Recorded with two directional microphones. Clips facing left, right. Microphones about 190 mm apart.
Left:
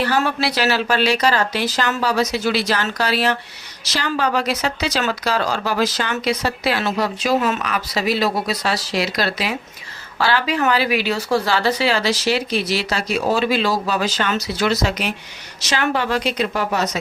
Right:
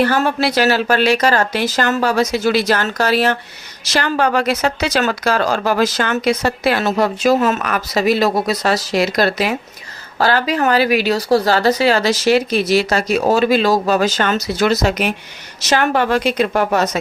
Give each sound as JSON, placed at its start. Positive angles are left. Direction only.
{"t": 0.0, "sound": "a woman's voice", "side_deg": -50}